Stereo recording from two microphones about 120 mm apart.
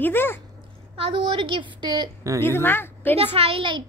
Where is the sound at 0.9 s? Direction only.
50° right (ahead or behind).